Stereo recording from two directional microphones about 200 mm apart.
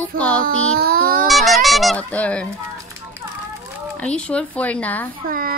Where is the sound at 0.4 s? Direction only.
50° right (ahead or behind).